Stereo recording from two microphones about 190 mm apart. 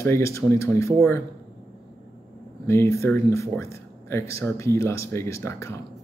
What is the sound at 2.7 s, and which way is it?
Speech, 15° left (ahead or behind).